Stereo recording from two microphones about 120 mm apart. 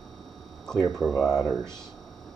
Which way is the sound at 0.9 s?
Centre (ahead or behind).